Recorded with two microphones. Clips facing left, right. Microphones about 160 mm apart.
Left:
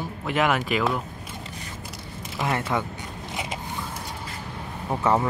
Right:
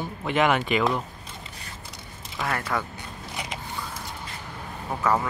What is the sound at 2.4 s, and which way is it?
Speech, 20° left (ahead or behind).